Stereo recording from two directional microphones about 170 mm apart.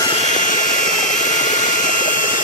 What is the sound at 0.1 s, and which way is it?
Jet engine, 45° left (ahead or behind).